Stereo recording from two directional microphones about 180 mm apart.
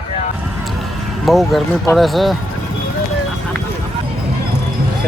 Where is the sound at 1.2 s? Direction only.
Centre (ahead or behind).